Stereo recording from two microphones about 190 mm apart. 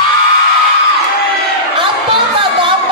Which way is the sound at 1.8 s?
25° right (ahead or behind).